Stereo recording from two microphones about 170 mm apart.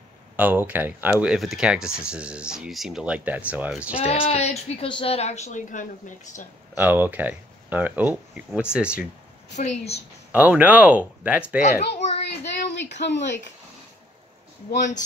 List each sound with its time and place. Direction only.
0.4 s speech: 10° right (ahead or behind)
3.9 s a woman's voice: 35° left (ahead or behind)
6.8 s speech: 10° right (ahead or behind)
9.5 s a woman's voice: 40° left (ahead or behind)
10.3 s speech: 10° right (ahead or behind)
11.9 s a sound: 40° left (ahead or behind)
12.3 s a child's voice: 90° left
14.7 s a woman's voice: 45° left (ahead or behind)